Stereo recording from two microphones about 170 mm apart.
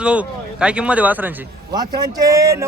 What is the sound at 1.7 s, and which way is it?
Speech, 25° right (ahead or behind).